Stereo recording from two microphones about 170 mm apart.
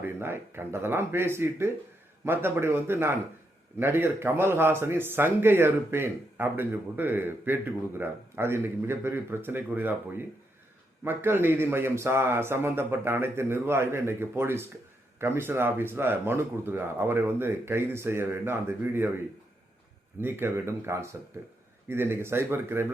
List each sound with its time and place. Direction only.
0.0 s speech: 15° right (ahead or behind)
20.2 s speech: 15° right (ahead or behind)